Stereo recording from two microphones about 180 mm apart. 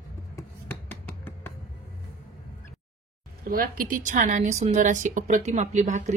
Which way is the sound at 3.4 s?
50° right (ahead or behind).